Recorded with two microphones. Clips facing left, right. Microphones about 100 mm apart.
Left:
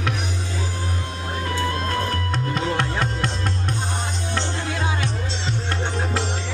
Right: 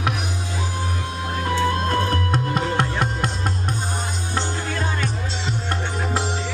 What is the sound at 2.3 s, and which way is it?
Music, 15° right (ahead or behind).